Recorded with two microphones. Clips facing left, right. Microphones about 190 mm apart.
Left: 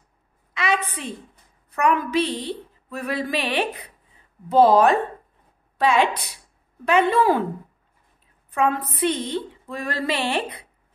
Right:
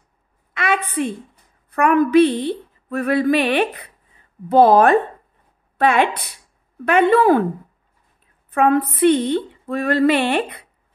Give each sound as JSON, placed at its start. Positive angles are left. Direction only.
{"t": 0.6, "sound": "a sound", "side_deg": -55}
{"t": 1.7, "sound": "a woman's voice", "side_deg": -55}
{"t": 8.5, "sound": "a woman's voice", "side_deg": -55}